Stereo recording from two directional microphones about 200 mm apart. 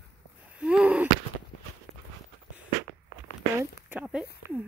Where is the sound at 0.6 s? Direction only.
5° right (ahead or behind).